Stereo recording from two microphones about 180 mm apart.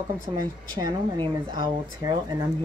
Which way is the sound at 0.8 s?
25° right (ahead or behind).